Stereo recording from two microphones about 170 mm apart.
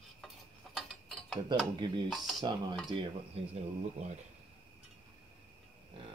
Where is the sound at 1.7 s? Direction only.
25° right (ahead or behind).